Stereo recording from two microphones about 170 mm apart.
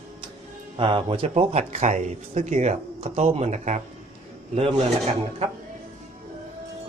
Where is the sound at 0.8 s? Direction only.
30° right (ahead or behind).